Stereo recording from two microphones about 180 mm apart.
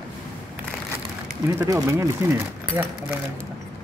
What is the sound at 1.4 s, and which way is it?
Speech, 15° right (ahead or behind).